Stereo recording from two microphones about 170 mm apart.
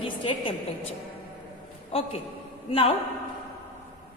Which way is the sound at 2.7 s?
35° left (ahead or behind).